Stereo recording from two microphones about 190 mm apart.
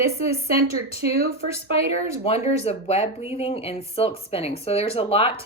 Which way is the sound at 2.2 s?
30° left (ahead or behind).